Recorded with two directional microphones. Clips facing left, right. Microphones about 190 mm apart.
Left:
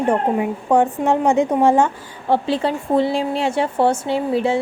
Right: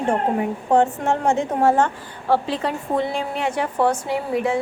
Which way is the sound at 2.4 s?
30° left (ahead or behind).